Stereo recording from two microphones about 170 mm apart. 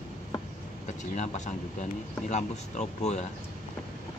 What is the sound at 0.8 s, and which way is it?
Speech, 45° left (ahead or behind).